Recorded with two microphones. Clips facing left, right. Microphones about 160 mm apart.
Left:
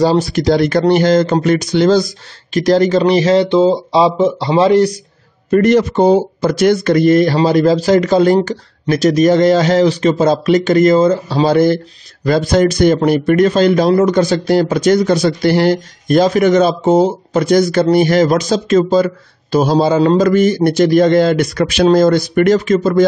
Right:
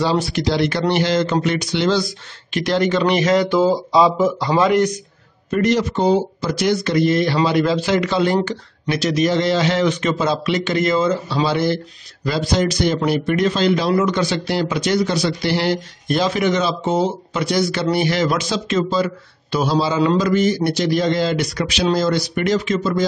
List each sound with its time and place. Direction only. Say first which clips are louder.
0.0 s speech: left 6 dB; 40° left (ahead or behind)
5.5 s speech: left 7 dB; 55° left (ahead or behind)